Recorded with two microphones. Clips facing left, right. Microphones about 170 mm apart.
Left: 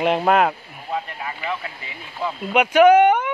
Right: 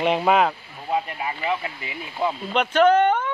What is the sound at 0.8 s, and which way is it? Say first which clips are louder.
Speech: right 3 dB; 15° right (ahead or behind).